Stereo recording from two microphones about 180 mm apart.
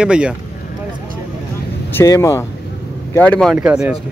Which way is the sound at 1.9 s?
15° left (ahead or behind).